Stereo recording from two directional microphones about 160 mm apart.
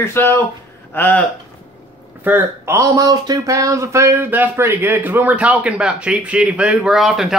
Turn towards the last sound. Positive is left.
turn(degrees=0)  # may be behind; listen again after turning